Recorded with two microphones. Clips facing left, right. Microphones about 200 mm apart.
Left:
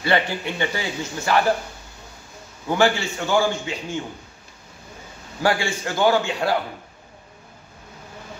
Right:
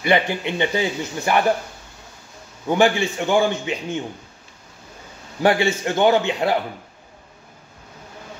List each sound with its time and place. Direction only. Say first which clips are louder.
0.0 s a man's voice: right 2 dB; 20° right (ahead or behind)
2.8 s a man's voice: right 2 dB; 20° right (ahead or behind)
5.4 s a man's voice: right 4 dB; 20° right (ahead or behind)